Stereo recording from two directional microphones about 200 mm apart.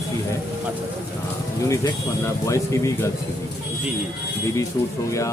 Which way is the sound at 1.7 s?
15° left (ahead or behind).